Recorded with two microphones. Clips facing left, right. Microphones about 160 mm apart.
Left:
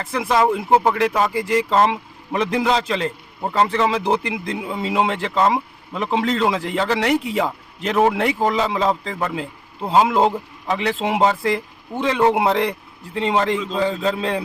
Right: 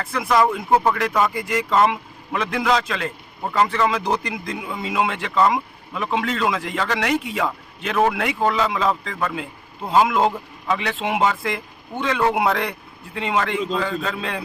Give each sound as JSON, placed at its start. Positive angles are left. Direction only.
{"t": 0.1, "sound": "a man's voice", "side_deg": 30}